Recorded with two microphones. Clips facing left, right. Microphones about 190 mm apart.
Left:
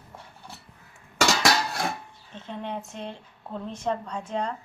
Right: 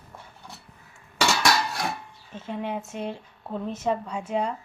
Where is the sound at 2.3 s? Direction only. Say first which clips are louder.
Right 3 dB; 10° right (ahead or behind).